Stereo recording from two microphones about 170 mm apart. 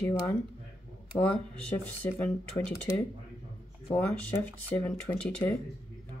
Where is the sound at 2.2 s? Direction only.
10° left (ahead or behind).